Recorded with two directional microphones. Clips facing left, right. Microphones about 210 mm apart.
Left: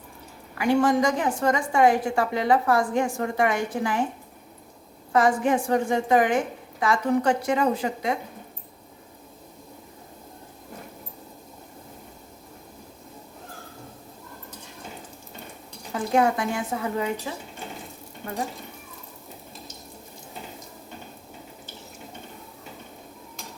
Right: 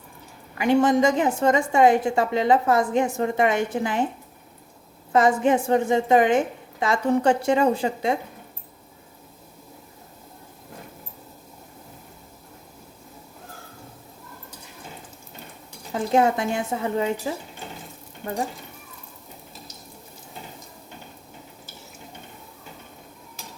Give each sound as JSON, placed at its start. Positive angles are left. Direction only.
{"t": 0.6, "sound": "a woman's voice", "side_deg": -20}
{"t": 5.1, "sound": "a woman's voice", "side_deg": -25}
{"t": 15.9, "sound": "a woman's voice", "side_deg": -25}